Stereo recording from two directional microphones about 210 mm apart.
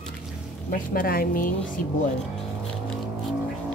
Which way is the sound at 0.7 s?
40° left (ahead or behind).